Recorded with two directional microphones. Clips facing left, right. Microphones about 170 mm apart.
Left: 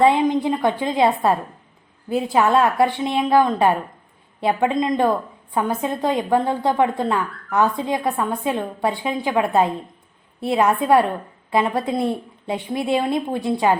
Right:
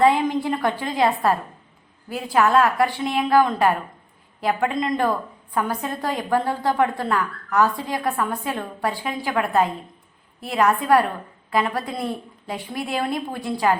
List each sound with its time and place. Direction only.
0.0 s a woman's voice: 20° left (ahead or behind)